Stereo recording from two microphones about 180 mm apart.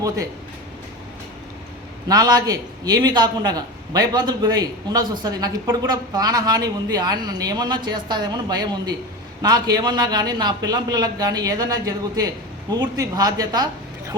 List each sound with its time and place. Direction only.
2.0 s speech: 20° right (ahead or behind)